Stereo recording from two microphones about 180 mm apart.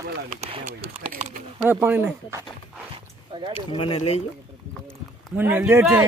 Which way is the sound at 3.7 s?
30° left (ahead or behind).